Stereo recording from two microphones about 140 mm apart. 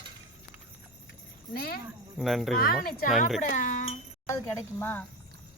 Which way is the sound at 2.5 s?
90° left.